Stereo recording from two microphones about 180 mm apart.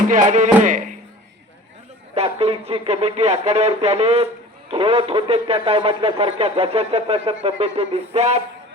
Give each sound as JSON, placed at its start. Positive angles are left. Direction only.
{"t": 0.1, "sound": "music", "side_deg": -45}
{"t": 2.1, "sound": "speech", "side_deg": -35}